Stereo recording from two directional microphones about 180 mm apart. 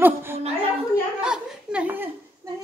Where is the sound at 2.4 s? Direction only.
15° right (ahead or behind).